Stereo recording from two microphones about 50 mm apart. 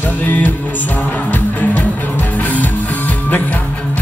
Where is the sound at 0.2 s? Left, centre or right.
Left.